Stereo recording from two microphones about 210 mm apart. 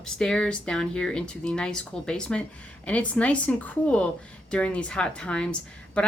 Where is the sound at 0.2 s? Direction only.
5° left (ahead or behind).